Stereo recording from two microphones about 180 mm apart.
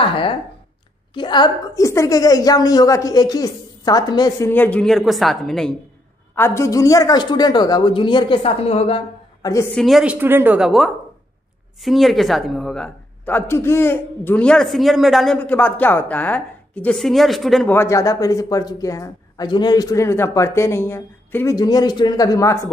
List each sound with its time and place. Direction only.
1.1 s a man's voice: 25° left (ahead or behind); by 5.8 s centre (ahead or behind)
6.3 s a man's voice: 15° left (ahead or behind); by 9.0 s 35° left (ahead or behind)
9.4 s a woman's voice: 15° left (ahead or behind)
9.8 s a woman's voice: centre (ahead or behind)
17.7 s a man's voice: 15° left (ahead or behind)